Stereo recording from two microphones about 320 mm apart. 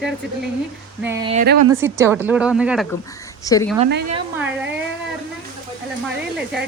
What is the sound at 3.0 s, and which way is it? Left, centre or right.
Speech, centre.